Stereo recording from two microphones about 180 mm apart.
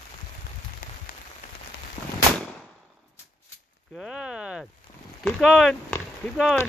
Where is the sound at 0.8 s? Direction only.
50° left (ahead or behind).